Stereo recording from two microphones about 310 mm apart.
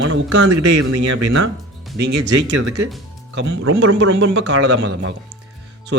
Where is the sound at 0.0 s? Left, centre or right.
Right.